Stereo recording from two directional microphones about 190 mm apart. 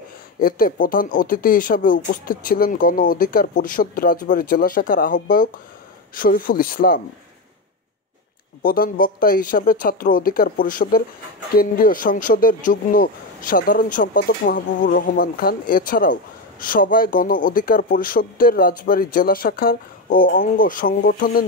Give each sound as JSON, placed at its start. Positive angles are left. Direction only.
{"t": 0.4, "sound": "speech", "side_deg": 50}
{"t": 8.6, "sound": "speech", "side_deg": 50}